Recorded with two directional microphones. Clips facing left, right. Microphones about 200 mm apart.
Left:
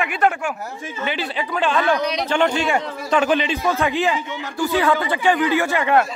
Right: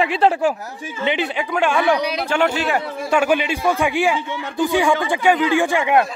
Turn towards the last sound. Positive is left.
turn(degrees=-15)  # may be behind; listen again after turning